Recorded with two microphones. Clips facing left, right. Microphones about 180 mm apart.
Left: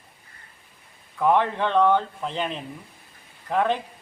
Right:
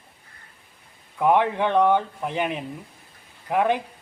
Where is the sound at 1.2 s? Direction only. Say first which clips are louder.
Right 1 dB; 15° right (ahead or behind).